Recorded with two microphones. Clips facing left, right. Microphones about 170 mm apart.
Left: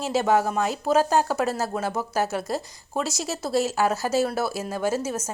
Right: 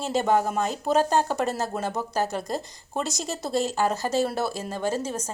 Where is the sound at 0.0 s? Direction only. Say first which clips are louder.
Left 1 dB; 5° left (ahead or behind).